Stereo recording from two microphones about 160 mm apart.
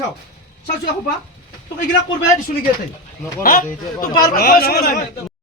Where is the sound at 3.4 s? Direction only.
65° left (ahead or behind).